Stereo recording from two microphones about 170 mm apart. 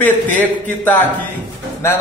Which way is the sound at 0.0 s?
10° left (ahead or behind).